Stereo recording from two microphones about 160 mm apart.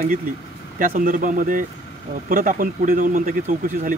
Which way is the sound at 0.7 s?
60° right (ahead or behind).